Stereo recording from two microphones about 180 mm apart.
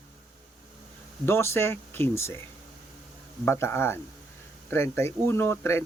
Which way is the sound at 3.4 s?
15° left (ahead or behind).